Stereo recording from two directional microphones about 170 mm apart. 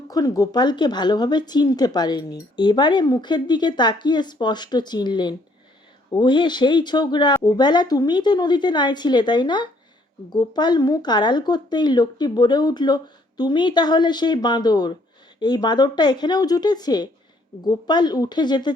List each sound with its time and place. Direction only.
0.1 s speech: 20° left (ahead or behind)